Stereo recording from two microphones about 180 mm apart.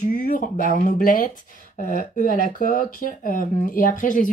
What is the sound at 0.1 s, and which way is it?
Speech, 50° left (ahead or behind).